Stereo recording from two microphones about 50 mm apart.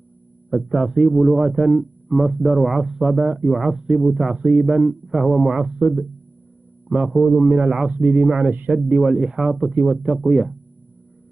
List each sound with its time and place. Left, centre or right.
0.5 s a man's voice: centre
5.6 s speech: centre
7.1 s a man's voice: centre
7.9 s a man's voice: right
8.9 s a man's voice: centre